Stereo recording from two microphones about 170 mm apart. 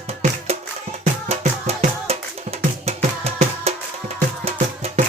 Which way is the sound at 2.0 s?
40° right (ahead or behind).